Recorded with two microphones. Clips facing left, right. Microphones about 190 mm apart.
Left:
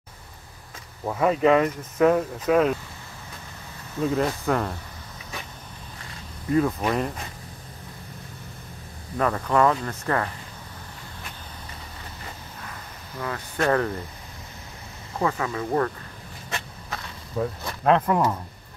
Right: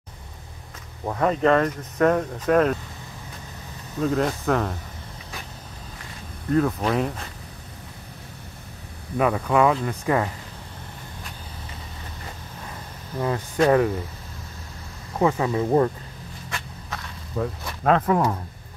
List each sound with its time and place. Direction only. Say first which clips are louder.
1.0 s speech: even; 5° left (ahead or behind)
4.0 s speech: right 1 dB; centre (ahead or behind)
6.5 s speech: right 1 dB; 5° left (ahead or behind)
9.2 s speech: right 2 dB; 10° right (ahead or behind)
13.2 s speech: right 5 dB; 20° right (ahead or behind)
15.1 s speech: right 5 dB; 20° right (ahead or behind)
17.4 s speech: even; centre (ahead or behind)